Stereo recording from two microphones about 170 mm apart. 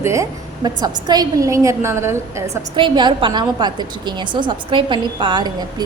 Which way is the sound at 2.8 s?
25° right (ahead or behind).